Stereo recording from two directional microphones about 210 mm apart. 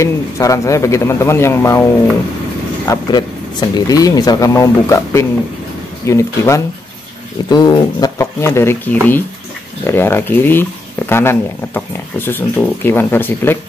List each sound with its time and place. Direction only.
0.0 s speech: 15° left (ahead or behind)
2.9 s speech: 20° left (ahead or behind)